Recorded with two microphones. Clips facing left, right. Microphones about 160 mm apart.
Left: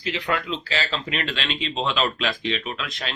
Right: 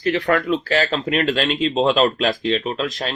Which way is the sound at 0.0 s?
55° right (ahead or behind).